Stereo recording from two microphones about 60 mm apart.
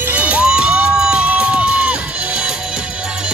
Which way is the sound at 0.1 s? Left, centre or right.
Right.